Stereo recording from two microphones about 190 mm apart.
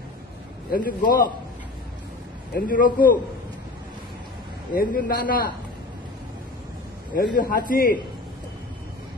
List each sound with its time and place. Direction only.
0.7 s a man's voice: 50° left (ahead or behind)
2.5 s a man's voice: 45° left (ahead or behind)
4.7 s a man's voice: 50° left (ahead or behind)
7.2 s a man's voice: 50° left (ahead or behind)